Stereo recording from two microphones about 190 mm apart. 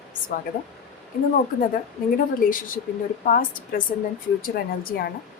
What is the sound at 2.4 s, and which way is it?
A woman's voice, 45° left (ahead or behind).